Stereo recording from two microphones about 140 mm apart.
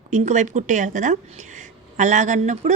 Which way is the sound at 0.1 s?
60° right (ahead or behind).